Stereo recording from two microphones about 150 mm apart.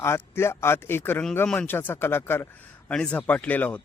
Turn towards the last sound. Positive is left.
turn(degrees=10)  # may be behind; listen again after turning